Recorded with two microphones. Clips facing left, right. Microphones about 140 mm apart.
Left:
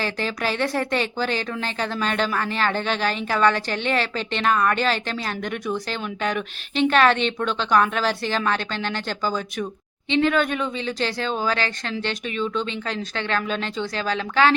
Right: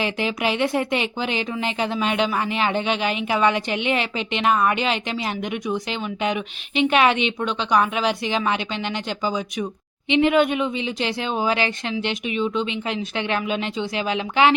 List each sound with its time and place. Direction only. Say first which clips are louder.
0.0 s speech: right 2 dB; 20° right (ahead or behind)
6.3 s speech: right 1 dB; 10° right (ahead or behind)
10.1 s speech: right 3 dB; 15° right (ahead or behind)